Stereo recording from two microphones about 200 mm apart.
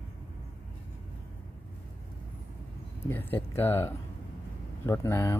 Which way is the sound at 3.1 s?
10° left (ahead or behind).